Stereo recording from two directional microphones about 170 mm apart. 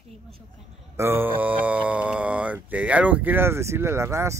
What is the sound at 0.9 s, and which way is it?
Speech, 15° right (ahead or behind).